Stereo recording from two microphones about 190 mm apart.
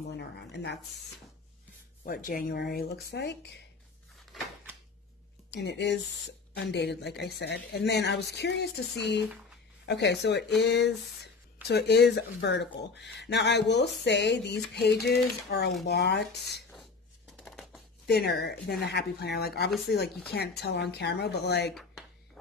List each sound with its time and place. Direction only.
0.2 s speech: 65° left (ahead or behind)
2.0 s speech: 50° left (ahead or behind)
5.5 s speech: 65° left (ahead or behind)
17.4 s scissors: centre (ahead or behind)
18.0 s speech: 60° left (ahead or behind)